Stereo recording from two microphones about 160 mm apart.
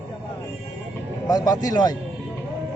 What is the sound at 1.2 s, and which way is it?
Speech, 25° left (ahead or behind).